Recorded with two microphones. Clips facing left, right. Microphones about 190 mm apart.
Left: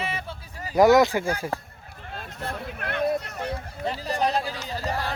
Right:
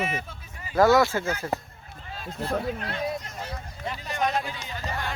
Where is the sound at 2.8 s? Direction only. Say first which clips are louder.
Left 5 dB; 60° left (ahead or behind).